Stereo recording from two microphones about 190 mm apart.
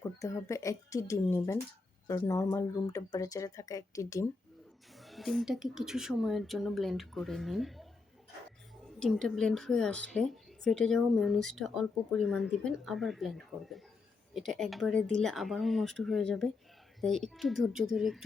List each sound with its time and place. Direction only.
0.0 s speech: 15° left (ahead or behind)
4.9 s speech: centre (ahead or behind)
9.0 s speech: 5° left (ahead or behind)